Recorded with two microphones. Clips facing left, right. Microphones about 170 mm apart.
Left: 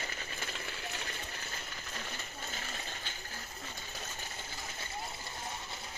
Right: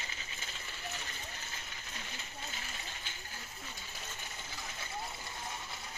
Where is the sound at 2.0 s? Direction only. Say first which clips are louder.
Left 3 dB; 45° left (ahead or behind).